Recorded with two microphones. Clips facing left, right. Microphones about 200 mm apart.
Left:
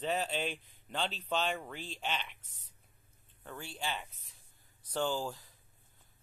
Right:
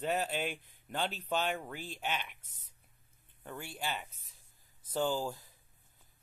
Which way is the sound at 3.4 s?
15° right (ahead or behind).